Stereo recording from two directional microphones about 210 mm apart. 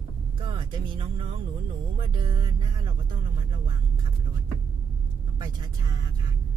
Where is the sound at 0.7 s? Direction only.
20° right (ahead or behind).